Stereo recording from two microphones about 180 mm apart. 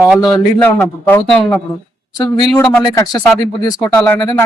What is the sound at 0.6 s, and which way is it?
A man's voice, 10° left (ahead or behind).